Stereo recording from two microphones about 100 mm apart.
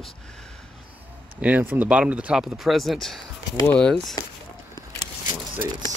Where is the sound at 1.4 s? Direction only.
20° right (ahead or behind); by 4.1 s 5° left (ahead or behind).